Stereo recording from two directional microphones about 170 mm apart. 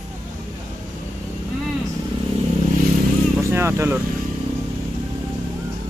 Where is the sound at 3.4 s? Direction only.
15° right (ahead or behind).